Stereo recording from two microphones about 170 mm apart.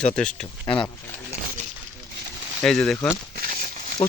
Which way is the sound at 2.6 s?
5° left (ahead or behind).